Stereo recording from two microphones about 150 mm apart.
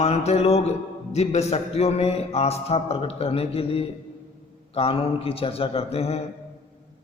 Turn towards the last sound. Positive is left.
turn(degrees=40)  # may be behind; listen again after turning